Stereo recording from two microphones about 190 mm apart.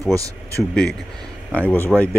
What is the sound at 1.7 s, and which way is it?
Speech, 10° left (ahead or behind).